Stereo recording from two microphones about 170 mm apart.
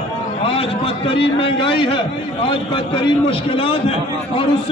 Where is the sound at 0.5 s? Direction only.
35° left (ahead or behind).